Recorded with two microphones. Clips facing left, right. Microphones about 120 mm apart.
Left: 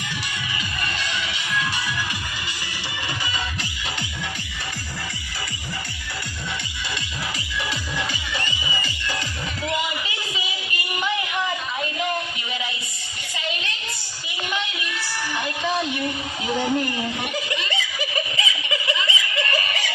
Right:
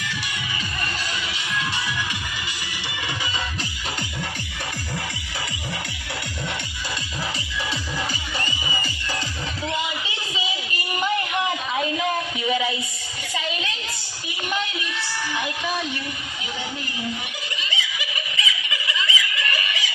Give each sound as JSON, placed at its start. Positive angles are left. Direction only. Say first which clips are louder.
{"t": 8.4, "sound": "music", "louder": "even", "side_deg": -40}
{"t": 15.4, "sound": "music", "louder": "left 3 dB", "side_deg": 0}
{"t": 16.5, "sound": "a sound", "louder": "left 11 dB", "side_deg": 50}
{"t": 17.6, "sound": "snicker", "louder": "left 3 dB", "side_deg": 45}
{"t": 18.3, "sound": "snicker", "louder": "left 2 dB", "side_deg": 30}